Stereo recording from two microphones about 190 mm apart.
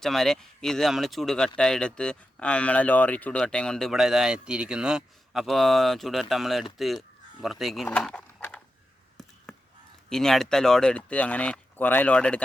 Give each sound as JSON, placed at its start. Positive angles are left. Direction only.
{"t": 0.0, "sound": "speech", "side_deg": 0}
{"t": 7.9, "sound": "horse", "side_deg": 5}
{"t": 10.1, "sound": "speech", "side_deg": 5}